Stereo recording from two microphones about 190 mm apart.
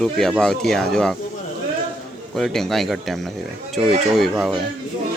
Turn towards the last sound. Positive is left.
turn(degrees=0)  # may be behind; listen again after turning